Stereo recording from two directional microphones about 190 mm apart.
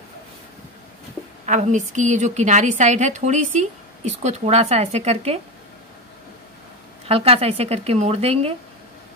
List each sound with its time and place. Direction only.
1.4 s a woman's voice: 40° right (ahead or behind)
7.1 s a woman's voice: 30° right (ahead or behind)